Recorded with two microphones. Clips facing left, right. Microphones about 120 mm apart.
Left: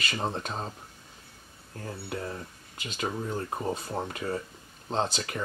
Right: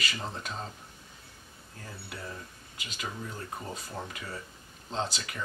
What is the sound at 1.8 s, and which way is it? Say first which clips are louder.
Speech: left 7 dB; 40° left (ahead or behind).